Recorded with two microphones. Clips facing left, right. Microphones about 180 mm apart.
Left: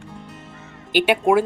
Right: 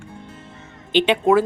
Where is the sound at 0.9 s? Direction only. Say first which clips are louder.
Right 1 dB; 10° left (ahead or behind).